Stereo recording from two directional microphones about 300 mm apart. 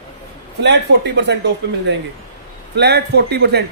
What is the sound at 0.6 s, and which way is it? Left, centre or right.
Speech, right.